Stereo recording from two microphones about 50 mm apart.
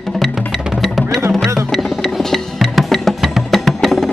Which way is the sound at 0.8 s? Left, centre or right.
Centre.